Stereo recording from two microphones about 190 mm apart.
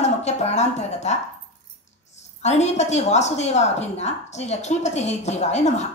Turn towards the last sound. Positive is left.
turn(degrees=35)  # may be behind; listen again after turning